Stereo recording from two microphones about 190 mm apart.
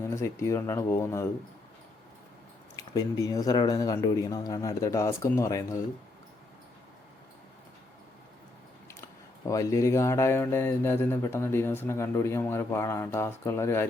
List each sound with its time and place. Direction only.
0.1 s speech: 15° left (ahead or behind)
2.7 s speech: 20° left (ahead or behind)
9.5 s speech: 15° left (ahead or behind)